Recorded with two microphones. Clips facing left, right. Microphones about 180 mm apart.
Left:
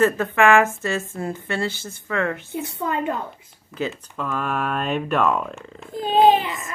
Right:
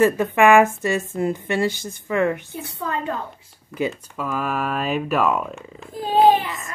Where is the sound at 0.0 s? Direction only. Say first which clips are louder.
Right 2 dB; 10° right (ahead or behind).